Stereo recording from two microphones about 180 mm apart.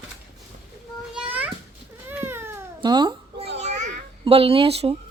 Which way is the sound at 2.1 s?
10° right (ahead or behind).